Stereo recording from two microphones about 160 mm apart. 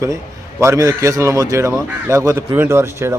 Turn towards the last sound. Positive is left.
turn(degrees=-15)  # may be behind; listen again after turning